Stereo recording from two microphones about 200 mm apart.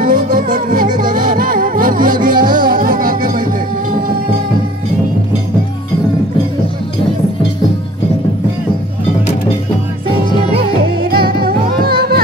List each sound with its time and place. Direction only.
0.0 s music: 45° right (ahead or behind)
10.9 s music: 50° right (ahead or behind)